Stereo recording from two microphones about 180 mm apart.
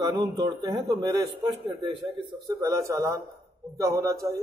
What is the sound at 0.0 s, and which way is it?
A man's voice, 20° right (ahead or behind).